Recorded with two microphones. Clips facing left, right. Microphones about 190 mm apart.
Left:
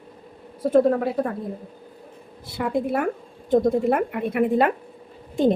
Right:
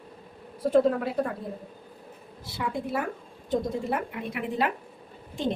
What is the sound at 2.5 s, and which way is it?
A woman's voice, 55° left (ahead or behind).